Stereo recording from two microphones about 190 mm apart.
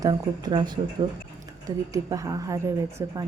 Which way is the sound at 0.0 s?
20° right (ahead or behind).